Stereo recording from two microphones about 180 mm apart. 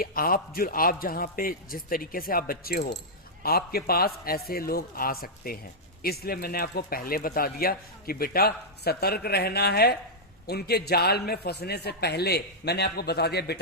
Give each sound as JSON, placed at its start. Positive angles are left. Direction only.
{"t": 0.0, "sound": "a man's voice", "side_deg": 55}